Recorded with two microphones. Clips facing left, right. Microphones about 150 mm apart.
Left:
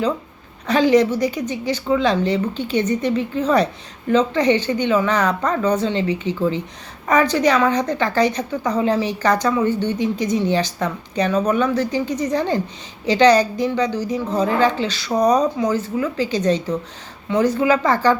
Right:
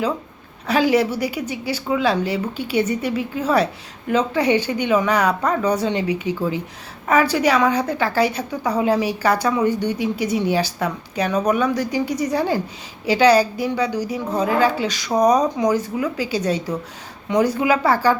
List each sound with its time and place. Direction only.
0.7 s a woman's voice: 10° right (ahead or behind)